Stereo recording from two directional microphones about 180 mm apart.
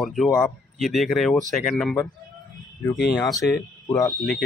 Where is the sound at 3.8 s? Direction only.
15° left (ahead or behind).